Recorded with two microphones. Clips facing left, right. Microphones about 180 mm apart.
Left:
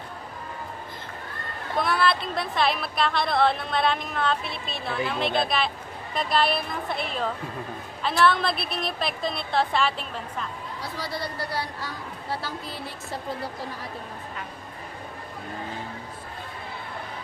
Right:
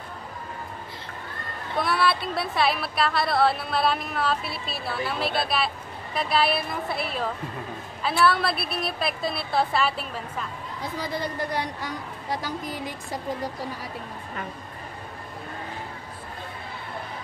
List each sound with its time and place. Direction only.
1.8 s speech: centre (ahead or behind)
10.8 s speech: 15° right (ahead or behind)